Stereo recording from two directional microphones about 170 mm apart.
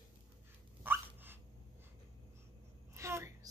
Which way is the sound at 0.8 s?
10° right (ahead or behind).